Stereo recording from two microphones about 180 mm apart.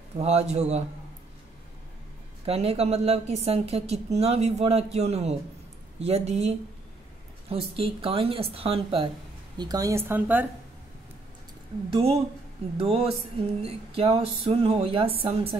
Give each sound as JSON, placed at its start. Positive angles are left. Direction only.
{"t": 0.2, "sound": "a woman's voice", "side_deg": -35}
{"t": 2.4, "sound": "a woman's voice", "side_deg": -35}
{"t": 7.7, "sound": "a woman's voice", "side_deg": -30}
{"t": 9.6, "sound": "a woman's voice", "side_deg": -20}
{"t": 11.9, "sound": "a woman's voice", "side_deg": -35}